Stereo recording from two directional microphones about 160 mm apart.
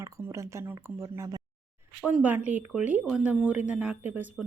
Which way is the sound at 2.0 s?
10° right (ahead or behind).